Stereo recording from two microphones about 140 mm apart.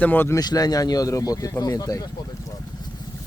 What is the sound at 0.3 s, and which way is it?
Speech, 25° left (ahead or behind).